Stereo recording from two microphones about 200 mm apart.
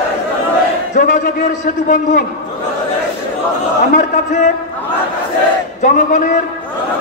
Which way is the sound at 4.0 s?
35° left (ahead or behind).